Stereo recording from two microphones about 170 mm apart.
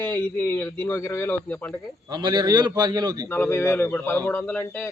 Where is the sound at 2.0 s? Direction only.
25° right (ahead or behind).